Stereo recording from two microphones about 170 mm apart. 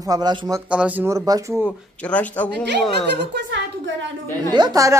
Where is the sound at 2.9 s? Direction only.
85° right.